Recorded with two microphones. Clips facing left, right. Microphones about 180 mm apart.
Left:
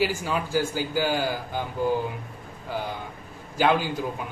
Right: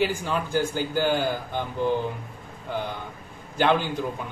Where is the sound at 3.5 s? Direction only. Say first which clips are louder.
Even; 5° left (ahead or behind).